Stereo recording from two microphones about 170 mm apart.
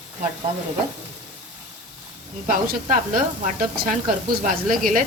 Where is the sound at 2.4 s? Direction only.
45° right (ahead or behind).